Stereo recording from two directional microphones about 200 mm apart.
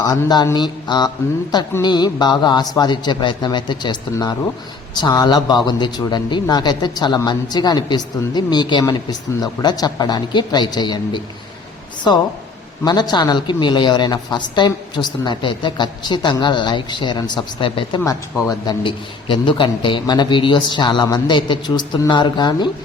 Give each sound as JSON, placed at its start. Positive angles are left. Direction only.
{"t": 0.0, "sound": "a man's voice", "side_deg": 20}